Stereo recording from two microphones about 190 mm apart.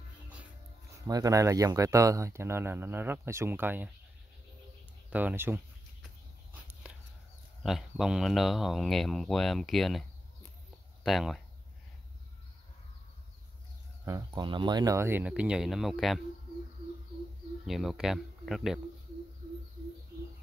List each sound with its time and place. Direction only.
0.9 s speech: 20° right (ahead or behind)
5.1 s speech: 10° right (ahead or behind)
7.6 s speech: centre (ahead or behind)
11.1 s speech: centre (ahead or behind)
14.0 s speech: 20° right (ahead or behind); by 16.2 s centre (ahead or behind)
17.6 s speech: centre (ahead or behind)